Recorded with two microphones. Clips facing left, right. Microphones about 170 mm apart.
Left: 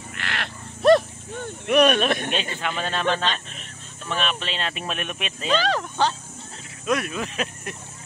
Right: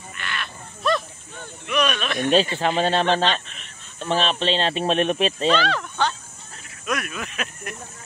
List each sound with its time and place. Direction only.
0.1 s livestock: 80° left
1.7 s speech: 55° left (ahead or behind)
2.5 s speech: 30° right (ahead or behind)
5.6 s speech: 40° left (ahead or behind)